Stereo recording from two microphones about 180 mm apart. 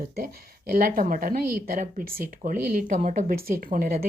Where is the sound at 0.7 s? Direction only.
55° right (ahead or behind).